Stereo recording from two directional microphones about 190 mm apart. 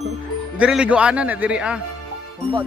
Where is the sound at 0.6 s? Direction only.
5° right (ahead or behind).